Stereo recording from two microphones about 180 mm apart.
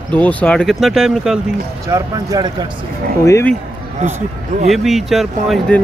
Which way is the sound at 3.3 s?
15° left (ahead or behind).